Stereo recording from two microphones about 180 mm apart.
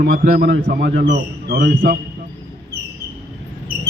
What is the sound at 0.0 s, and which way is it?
A man's voice, 55° right (ahead or behind).